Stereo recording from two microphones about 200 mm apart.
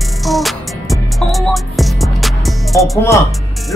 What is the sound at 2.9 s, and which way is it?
Speech, 15° left (ahead or behind).